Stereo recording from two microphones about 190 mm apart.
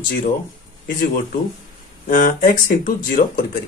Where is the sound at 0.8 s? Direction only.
45° left (ahead or behind).